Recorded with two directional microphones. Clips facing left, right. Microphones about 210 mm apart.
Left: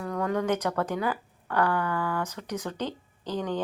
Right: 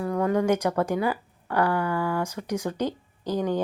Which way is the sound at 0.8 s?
10° right (ahead or behind).